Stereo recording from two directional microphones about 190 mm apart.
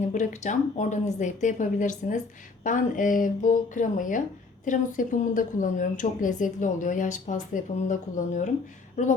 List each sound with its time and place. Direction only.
0.0 s a woman's voice: 40° left (ahead or behind)